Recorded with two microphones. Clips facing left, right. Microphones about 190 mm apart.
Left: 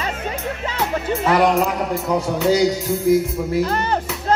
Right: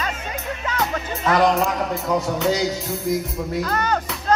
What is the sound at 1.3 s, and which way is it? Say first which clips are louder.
A man's voice: left 1 dB; 10° left (ahead or behind).